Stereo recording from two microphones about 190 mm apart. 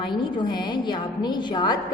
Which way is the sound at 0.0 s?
25° left (ahead or behind).